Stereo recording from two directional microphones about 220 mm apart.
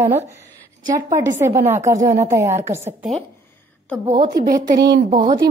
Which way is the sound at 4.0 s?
20° right (ahead or behind).